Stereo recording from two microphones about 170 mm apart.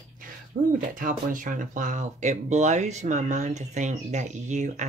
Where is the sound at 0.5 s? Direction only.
70° right (ahead or behind).